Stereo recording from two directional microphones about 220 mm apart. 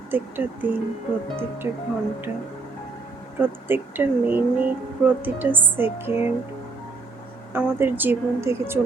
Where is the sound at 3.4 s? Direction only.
10° right (ahead or behind).